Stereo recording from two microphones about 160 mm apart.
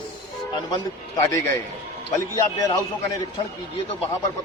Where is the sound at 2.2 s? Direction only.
20° left (ahead or behind).